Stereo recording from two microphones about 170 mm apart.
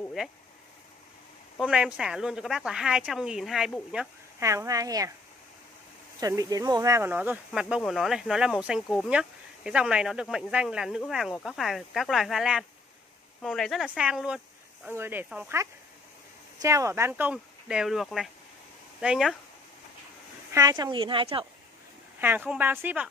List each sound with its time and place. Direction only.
0.0 s a sound: centre (ahead or behind)
1.7 s speech: 5° right (ahead or behind)
4.4 s speech: 20° right (ahead or behind)
6.1 s speech: 20° right (ahead or behind); by 19.3 s 5° right (ahead or behind)
20.5 s speech: 25° right (ahead or behind)
22.2 s speech: 10° right (ahead or behind)